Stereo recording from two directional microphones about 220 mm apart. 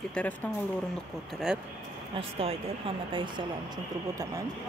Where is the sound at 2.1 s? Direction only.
25° right (ahead or behind).